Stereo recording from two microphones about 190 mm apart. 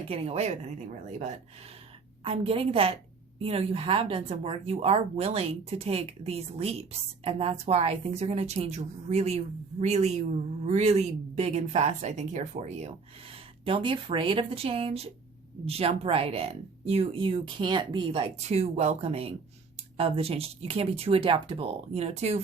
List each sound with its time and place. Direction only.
0.1 s a woman's voice: 30° right (ahead or behind)